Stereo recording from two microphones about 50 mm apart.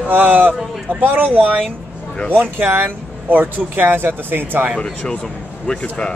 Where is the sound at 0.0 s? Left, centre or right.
Right.